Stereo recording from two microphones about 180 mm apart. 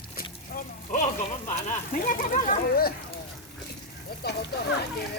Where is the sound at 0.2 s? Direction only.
50° left (ahead or behind).